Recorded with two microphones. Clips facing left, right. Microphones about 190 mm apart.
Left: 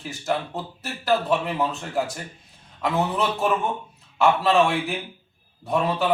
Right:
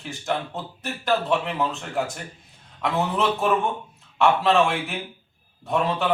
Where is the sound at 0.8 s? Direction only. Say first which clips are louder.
Left 1 dB; centre (ahead or behind).